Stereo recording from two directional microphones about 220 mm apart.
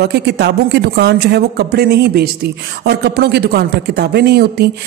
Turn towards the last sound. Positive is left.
turn(degrees=-45)  # may be behind; listen again after turning